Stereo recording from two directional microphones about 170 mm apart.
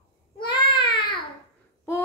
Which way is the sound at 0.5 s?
30° left (ahead or behind).